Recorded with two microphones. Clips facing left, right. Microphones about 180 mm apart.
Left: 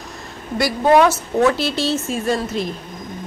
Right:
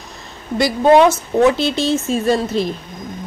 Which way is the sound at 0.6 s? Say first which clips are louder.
Right 3 dB; 25° right (ahead or behind).